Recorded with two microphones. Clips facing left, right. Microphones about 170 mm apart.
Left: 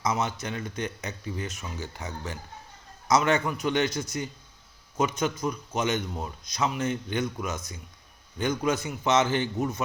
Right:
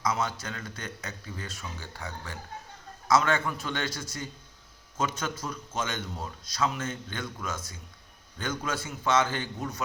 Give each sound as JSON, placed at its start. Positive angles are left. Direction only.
{"t": 0.0, "sound": "a man's voice", "side_deg": 20}